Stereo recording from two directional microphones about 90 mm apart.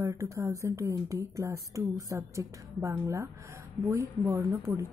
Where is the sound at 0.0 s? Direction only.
35° right (ahead or behind).